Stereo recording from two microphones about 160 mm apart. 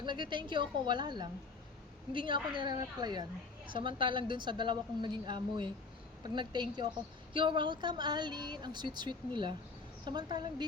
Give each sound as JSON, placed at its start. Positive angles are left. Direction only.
{"t": 0.0, "sound": "a woman's voice", "side_deg": -30}